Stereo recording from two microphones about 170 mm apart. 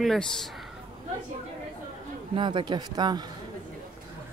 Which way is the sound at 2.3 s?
30° right (ahead or behind).